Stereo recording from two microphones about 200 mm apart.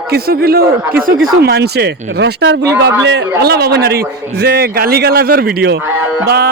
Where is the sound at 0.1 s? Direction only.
50° right (ahead or behind).